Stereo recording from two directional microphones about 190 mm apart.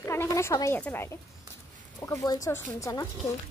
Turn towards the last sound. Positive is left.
turn(degrees=15)  # may be behind; listen again after turning